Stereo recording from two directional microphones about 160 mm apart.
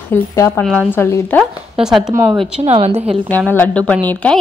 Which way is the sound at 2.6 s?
40° right (ahead or behind).